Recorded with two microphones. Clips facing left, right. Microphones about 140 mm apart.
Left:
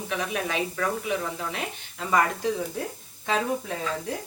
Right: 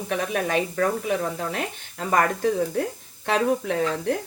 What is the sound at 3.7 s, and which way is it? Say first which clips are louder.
Stir: right 8 dB; 80° right.